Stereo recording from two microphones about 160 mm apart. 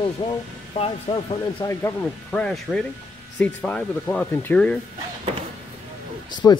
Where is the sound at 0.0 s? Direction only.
30° left (ahead or behind).